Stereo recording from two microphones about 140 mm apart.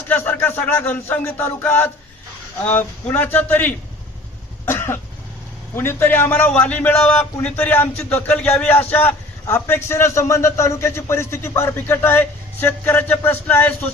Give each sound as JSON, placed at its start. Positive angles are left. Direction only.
{"t": 0.1, "sound": "a man's voice", "side_deg": 15}
{"t": 4.6, "sound": "cough", "side_deg": 15}
{"t": 5.7, "sound": "a man's voice", "side_deg": 15}